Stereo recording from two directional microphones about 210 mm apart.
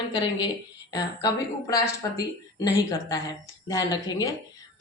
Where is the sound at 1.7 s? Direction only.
15° left (ahead or behind).